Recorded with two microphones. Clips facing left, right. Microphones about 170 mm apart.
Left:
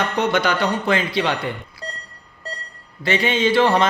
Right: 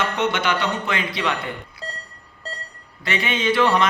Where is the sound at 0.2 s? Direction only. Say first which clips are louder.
Left 5 dB; 35° left (ahead or behind).